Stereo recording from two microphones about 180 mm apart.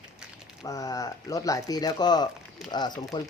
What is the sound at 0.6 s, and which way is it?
Speech, 20° left (ahead or behind).